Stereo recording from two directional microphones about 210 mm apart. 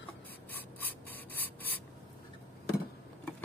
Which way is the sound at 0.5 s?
10° left (ahead or behind).